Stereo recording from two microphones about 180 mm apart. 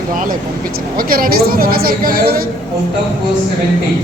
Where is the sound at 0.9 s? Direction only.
55° right (ahead or behind).